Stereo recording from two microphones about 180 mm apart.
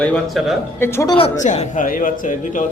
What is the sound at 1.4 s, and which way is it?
Speech, 40° left (ahead or behind).